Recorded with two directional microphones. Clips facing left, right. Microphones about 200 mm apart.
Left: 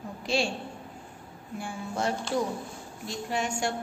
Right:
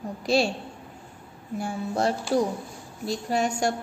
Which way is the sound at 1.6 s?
35° right (ahead or behind).